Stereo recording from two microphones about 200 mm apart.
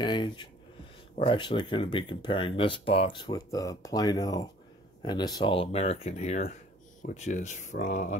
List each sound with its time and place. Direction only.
0.0 s speech: 25° left (ahead or behind); by 8.2 s 40° left (ahead or behind)